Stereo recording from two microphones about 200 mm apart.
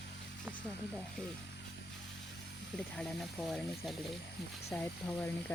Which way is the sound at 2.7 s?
5° left (ahead or behind).